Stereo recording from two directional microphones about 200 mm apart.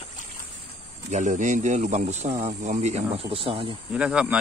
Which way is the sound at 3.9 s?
5° right (ahead or behind).